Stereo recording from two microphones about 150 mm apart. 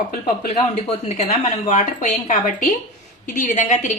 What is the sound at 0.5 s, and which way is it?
Speech, 40° left (ahead or behind).